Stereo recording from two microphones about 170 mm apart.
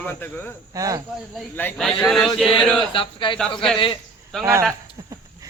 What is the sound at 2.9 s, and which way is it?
A man's voice, 30° left (ahead or behind).